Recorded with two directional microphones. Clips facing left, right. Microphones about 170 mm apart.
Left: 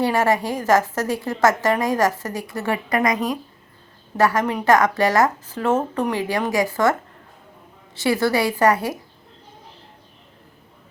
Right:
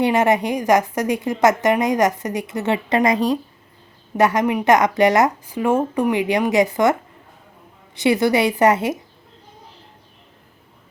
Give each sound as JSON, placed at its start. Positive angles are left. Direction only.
{"t": 0.0, "sound": "a woman's voice", "side_deg": -20}
{"t": 7.9, "sound": "a woman's voice", "side_deg": -20}